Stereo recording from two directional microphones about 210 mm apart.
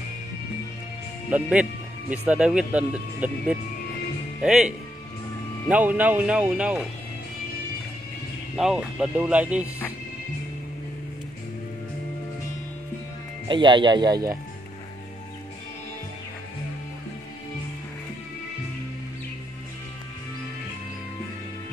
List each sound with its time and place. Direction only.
1.3 s speech: 5° right (ahead or behind)
5.7 s speech: 10° right (ahead or behind)
8.5 s speech: centre (ahead or behind)
13.5 s speech: 20° right (ahead or behind)